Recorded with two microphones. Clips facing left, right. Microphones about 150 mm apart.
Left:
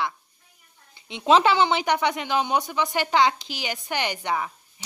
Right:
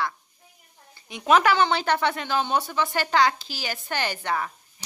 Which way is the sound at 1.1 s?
25° left (ahead or behind).